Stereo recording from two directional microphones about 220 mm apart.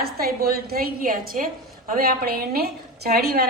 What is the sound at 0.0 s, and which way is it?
A woman's voice, 40° right (ahead or behind).